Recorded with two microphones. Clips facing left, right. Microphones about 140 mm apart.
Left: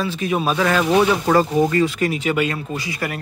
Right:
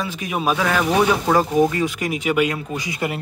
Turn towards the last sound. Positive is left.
turn(degrees=-20)  # may be behind; listen again after turning